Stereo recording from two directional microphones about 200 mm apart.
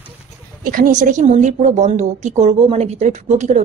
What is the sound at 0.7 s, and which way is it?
A woman's voice, 40° right (ahead or behind).